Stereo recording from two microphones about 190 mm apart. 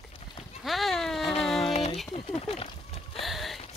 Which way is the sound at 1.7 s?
35° left (ahead or behind).